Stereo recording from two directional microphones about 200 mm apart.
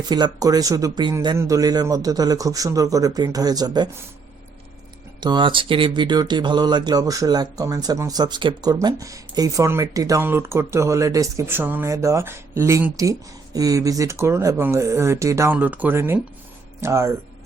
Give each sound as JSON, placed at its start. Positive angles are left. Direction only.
{"t": 0.0, "sound": "speech", "side_deg": -20}
{"t": 5.2, "sound": "speech", "side_deg": -25}